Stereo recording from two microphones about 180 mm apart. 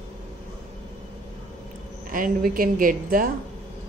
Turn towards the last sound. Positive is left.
turn(degrees=-50)  # may be behind; listen again after turning